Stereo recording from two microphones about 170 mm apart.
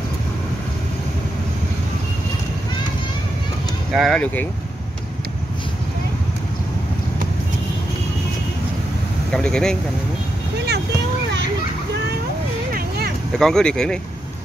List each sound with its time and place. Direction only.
3.9 s speech: centre (ahead or behind)
9.3 s speech: 5° left (ahead or behind)
12.7 s a sound: 60° right (ahead or behind)
13.4 s speech: 5° left (ahead or behind)